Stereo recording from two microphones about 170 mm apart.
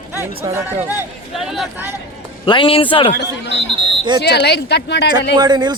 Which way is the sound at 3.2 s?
90° left.